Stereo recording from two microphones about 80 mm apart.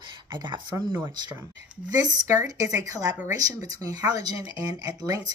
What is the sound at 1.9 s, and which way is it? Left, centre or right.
Speech, right.